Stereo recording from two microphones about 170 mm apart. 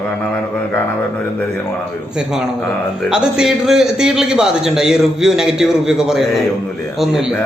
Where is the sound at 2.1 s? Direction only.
5° right (ahead or behind).